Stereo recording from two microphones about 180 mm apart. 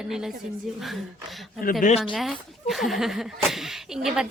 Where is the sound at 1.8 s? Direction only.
45° left (ahead or behind).